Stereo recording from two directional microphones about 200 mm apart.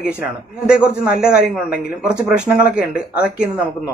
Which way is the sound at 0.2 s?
5° right (ahead or behind).